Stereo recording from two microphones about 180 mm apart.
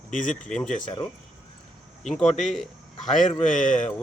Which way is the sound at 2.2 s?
40° left (ahead or behind).